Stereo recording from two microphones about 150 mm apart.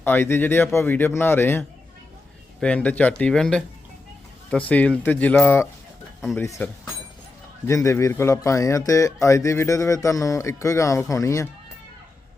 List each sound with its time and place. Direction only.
0.0 s speech: 15° left (ahead or behind)
4.7 s speech: 10° left (ahead or behind)
7.7 s speech: 20° left (ahead or behind)